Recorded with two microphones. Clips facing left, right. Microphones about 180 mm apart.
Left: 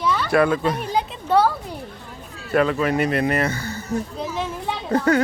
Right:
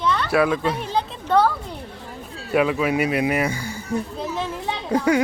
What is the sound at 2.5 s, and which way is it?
Speech, 10° right (ahead or behind).